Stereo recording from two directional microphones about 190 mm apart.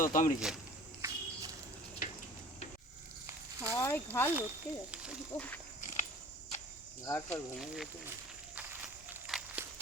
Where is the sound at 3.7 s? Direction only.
15° left (ahead or behind).